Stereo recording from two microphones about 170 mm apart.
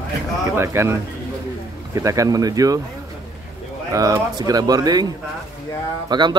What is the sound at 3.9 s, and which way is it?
Speech, 20° right (ahead or behind).